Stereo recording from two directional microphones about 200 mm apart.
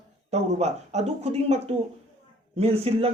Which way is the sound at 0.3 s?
35° right (ahead or behind).